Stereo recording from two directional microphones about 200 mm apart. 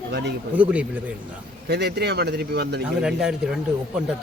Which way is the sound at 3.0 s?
5° right (ahead or behind).